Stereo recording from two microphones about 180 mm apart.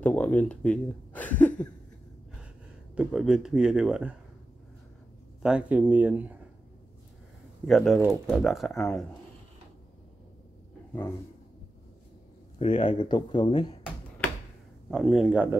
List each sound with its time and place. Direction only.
0.0 s speech: 10° left (ahead or behind)
3.0 s speech: 5° right (ahead or behind)
5.4 s speech: 5° right (ahead or behind)
7.6 s speech: centre (ahead or behind)
12.5 s speech: 30° left (ahead or behind)
14.9 s speech: centre (ahead or behind)